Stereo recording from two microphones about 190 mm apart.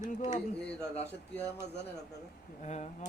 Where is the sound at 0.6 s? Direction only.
5° left (ahead or behind).